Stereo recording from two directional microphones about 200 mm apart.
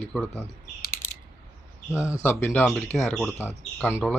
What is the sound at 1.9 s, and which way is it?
Speech, 15° left (ahead or behind).